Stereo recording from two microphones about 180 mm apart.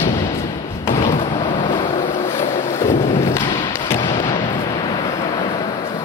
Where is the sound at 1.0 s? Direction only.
45° left (ahead or behind).